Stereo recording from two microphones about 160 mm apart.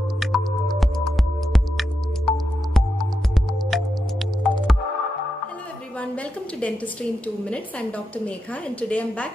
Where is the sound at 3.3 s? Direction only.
Centre (ahead or behind).